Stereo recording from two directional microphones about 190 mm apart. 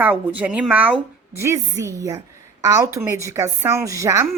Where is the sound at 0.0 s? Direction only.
10° right (ahead or behind).